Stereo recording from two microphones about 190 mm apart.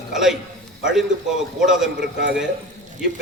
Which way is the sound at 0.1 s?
Centre (ahead or behind).